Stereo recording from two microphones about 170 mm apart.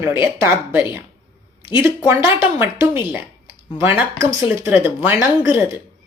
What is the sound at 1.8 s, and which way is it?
Speech, 15° right (ahead or behind).